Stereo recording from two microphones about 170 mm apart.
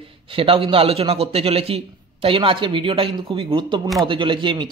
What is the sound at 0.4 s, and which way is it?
Speech, 30° right (ahead or behind).